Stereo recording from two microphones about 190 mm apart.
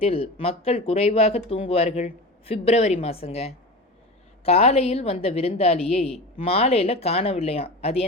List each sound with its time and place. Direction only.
0.0 s a woman's voice: 30° left (ahead or behind)